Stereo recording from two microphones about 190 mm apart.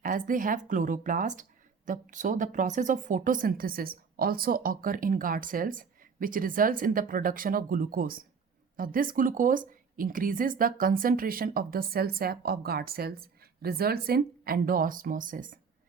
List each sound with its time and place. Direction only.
0.0 s speech: 45° right (ahead or behind)